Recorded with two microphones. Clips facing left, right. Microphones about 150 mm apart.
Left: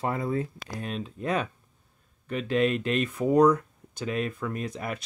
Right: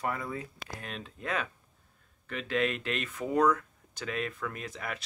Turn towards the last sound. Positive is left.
turn(degrees=25)  # may be behind; listen again after turning